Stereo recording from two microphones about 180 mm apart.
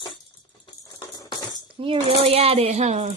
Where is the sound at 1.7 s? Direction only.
30° right (ahead or behind).